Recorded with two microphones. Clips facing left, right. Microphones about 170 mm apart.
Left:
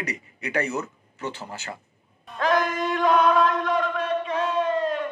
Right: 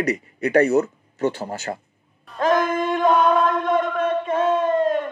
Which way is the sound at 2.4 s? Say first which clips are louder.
Right 4 dB; 50° right (ahead or behind).